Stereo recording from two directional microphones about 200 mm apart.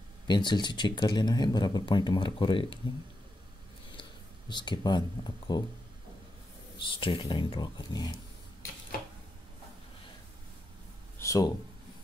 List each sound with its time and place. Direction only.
0.3 s speech: 20° left (ahead or behind)
4.5 s speech: 25° left (ahead or behind)
6.8 s speech: 25° left (ahead or behind)
11.1 s a sound: 15° left (ahead or behind)